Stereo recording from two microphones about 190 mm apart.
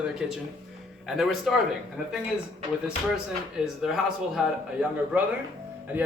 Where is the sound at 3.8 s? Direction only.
Centre (ahead or behind).